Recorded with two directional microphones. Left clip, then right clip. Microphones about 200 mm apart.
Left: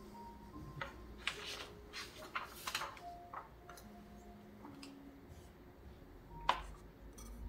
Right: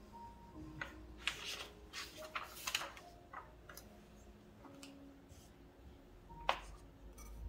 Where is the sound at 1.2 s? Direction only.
10° right (ahead or behind).